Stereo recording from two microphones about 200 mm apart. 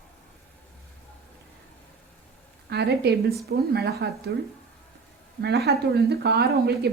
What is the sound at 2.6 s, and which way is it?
A woman's voice, 55° right (ahead or behind).